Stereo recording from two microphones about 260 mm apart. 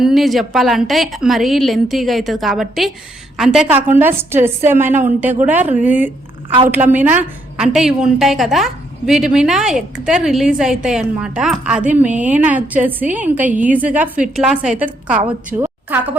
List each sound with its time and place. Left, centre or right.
0.0 s a woman's voice: centre
15.2 s a woman's voice: right
15.5 s a woman's voice: centre